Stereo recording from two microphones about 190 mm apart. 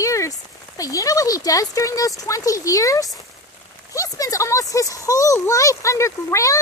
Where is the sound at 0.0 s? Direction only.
15° left (ahead or behind).